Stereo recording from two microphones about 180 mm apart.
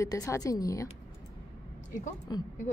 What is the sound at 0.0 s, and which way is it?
Speech, 20° left (ahead or behind).